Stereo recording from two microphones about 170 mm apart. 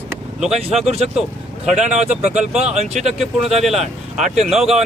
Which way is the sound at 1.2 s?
5° right (ahead or behind).